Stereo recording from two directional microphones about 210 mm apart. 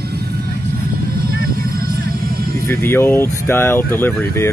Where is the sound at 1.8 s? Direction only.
45° right (ahead or behind).